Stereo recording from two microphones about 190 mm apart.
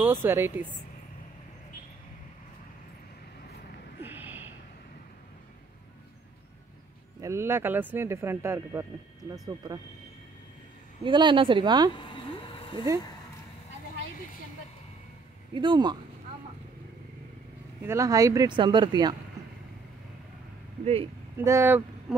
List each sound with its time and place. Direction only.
0.0 s speech: 10° right (ahead or behind)
4.0 s a sound: 10° right (ahead or behind)
7.2 s speech: 15° right (ahead or behind)
11.1 s speech: 25° right (ahead or behind)
11.9 s a sound: 25° left (ahead or behind)
15.5 s speech: 25° right (ahead or behind)
17.8 s speech: 15° right (ahead or behind)
19.4 s a sound: 15° right (ahead or behind)
20.8 s speech: 30° right (ahead or behind)
21.4 s speech: 10° right (ahead or behind)